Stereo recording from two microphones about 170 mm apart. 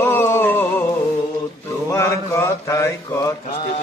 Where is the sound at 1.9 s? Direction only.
15° left (ahead or behind).